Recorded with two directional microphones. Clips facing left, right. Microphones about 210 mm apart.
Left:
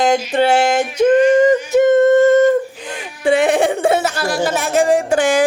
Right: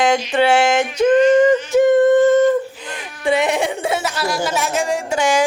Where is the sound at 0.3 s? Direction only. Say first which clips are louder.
Even; 40° left (ahead or behind).